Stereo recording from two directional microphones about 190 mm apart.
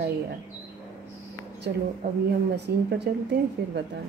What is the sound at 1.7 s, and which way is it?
A woman's voice, 60° right (ahead or behind).